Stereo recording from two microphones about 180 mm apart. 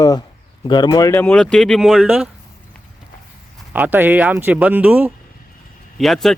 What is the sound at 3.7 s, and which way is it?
Speech, 10° right (ahead or behind).